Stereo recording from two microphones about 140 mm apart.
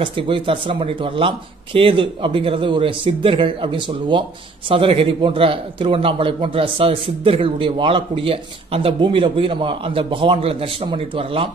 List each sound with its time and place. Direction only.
0.0 s speech: 40° right (ahead or behind)